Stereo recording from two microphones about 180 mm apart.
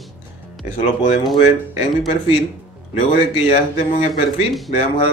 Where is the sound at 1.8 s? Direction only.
30° left (ahead or behind).